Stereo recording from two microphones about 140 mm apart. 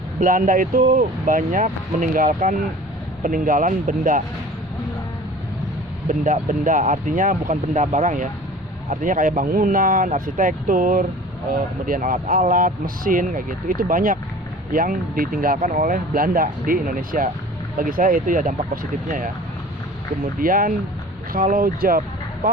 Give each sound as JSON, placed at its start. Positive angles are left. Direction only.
{"t": 0.2, "sound": "speech", "side_deg": -70}
{"t": 6.1, "sound": "speech", "side_deg": -65}
{"t": 20.4, "sound": "speech", "side_deg": -85}